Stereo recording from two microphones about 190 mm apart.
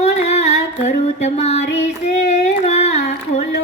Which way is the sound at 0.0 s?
35° left (ahead or behind).